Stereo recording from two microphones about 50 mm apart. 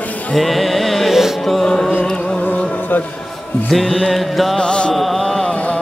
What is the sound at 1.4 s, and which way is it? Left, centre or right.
Music, centre.